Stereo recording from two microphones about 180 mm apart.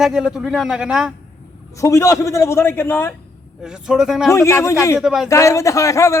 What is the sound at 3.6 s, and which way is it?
Speech, 5° right (ahead or behind).